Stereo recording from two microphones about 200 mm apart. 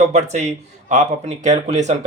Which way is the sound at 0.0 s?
35° right (ahead or behind).